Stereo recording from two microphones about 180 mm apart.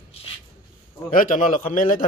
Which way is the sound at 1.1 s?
45° left (ahead or behind).